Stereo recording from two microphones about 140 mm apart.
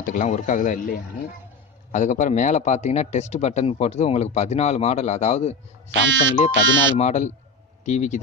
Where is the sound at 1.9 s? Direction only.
60° left (ahead or behind).